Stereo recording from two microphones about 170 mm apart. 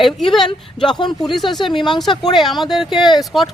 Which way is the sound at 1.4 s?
25° left (ahead or behind).